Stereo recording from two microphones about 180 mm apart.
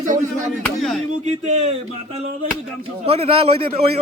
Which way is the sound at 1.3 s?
35° right (ahead or behind).